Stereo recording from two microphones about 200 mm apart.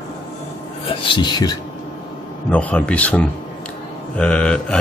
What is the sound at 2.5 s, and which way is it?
Speech, 5° left (ahead or behind).